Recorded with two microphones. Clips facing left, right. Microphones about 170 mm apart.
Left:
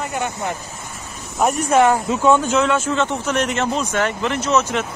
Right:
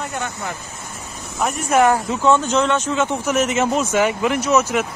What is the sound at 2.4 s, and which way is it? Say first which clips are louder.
Speech: left 1 dB; 5° left (ahead or behind).